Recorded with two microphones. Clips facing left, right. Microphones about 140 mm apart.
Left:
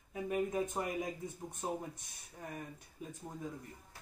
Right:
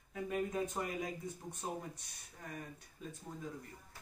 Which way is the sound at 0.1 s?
15° left (ahead or behind).